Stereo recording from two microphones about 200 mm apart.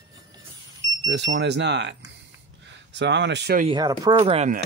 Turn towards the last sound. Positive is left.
turn(degrees=-30)  # may be behind; listen again after turning